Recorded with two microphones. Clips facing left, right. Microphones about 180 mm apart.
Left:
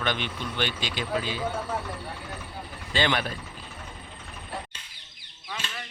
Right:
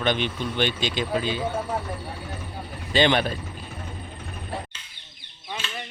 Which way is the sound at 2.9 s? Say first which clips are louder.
Right 6 dB; 20° right (ahead or behind).